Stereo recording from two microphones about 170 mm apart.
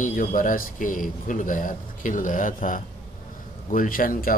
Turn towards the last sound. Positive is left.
turn(degrees=55)  # may be behind; listen again after turning